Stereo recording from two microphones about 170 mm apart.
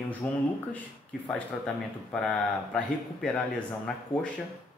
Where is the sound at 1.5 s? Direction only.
5° left (ahead or behind).